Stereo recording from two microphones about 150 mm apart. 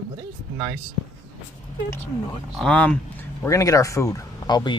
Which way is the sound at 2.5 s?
10° left (ahead or behind).